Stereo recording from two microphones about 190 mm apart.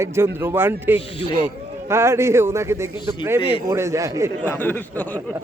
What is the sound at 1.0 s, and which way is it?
Speech, 25° left (ahead or behind).